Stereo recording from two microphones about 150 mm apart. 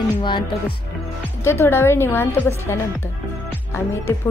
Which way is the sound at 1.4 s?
15° left (ahead or behind).